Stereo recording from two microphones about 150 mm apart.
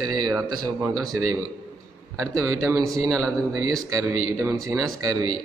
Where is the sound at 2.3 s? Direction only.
20° right (ahead or behind).